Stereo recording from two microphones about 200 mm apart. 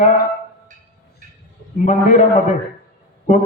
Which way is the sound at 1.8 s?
40° left (ahead or behind).